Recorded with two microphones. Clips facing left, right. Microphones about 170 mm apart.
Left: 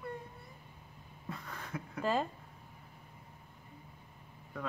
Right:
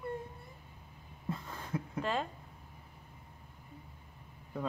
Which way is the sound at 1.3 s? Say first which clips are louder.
Right 4 dB; 25° right (ahead or behind).